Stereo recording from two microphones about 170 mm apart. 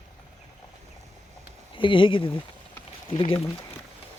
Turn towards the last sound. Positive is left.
turn(degrees=30)  # may be behind; listen again after turning